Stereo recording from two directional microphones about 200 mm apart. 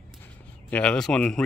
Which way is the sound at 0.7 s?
5° left (ahead or behind).